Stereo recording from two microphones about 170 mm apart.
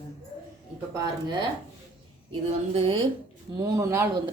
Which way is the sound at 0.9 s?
20° right (ahead or behind).